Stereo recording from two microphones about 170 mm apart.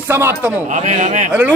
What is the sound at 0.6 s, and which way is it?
Speech, 45° right (ahead or behind).